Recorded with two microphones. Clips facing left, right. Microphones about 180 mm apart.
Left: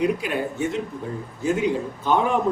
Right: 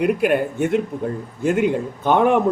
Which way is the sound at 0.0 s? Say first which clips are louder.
Right 5 dB; 60° right (ahead or behind).